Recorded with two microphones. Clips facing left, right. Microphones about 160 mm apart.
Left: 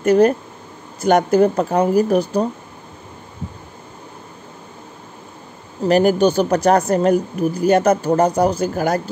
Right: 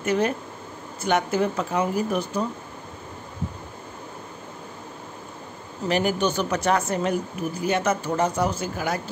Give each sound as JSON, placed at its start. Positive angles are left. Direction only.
{"t": 0.0, "sound": "speech", "side_deg": 40}
{"t": 5.9, "sound": "speech", "side_deg": 40}